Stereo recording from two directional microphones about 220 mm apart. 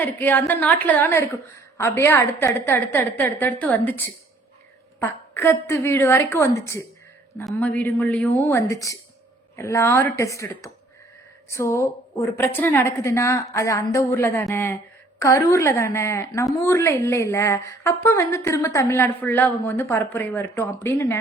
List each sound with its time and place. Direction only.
0.0 s a woman's voice: 10° left (ahead or behind)